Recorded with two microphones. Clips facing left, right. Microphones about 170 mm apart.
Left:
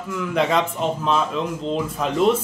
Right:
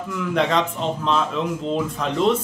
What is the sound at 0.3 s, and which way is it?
Speech, 5° left (ahead or behind).